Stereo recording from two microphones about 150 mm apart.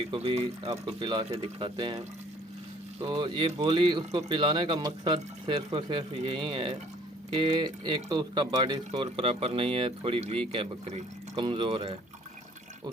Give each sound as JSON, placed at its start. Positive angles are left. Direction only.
{"t": 0.1, "sound": "speech", "side_deg": -40}
{"t": 9.0, "sound": "speech", "side_deg": -40}